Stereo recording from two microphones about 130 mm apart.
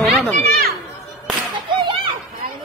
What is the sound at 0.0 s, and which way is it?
Children playing, centre (ahead or behind).